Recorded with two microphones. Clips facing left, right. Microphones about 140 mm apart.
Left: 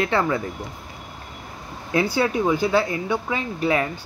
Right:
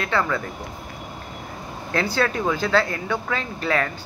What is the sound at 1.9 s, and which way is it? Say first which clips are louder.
Speech: left 2 dB; 15° left (ahead or behind).